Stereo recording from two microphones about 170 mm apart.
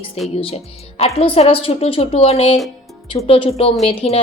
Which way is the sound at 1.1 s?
35° left (ahead or behind).